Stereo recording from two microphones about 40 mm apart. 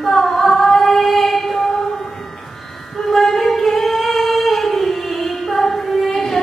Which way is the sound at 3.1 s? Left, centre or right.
Centre.